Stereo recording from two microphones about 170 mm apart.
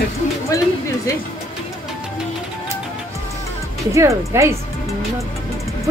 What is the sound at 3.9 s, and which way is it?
Speech, 15° right (ahead or behind).